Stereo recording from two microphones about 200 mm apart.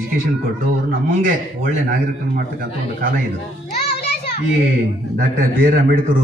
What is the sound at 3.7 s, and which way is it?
Music, 55° left (ahead or behind).